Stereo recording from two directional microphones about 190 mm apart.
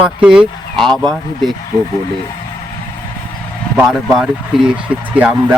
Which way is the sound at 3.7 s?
5° right (ahead or behind).